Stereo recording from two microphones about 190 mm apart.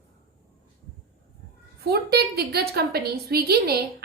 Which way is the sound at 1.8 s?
55° right (ahead or behind).